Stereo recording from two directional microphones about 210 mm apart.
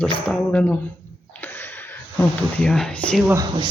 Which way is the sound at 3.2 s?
15° right (ahead or behind).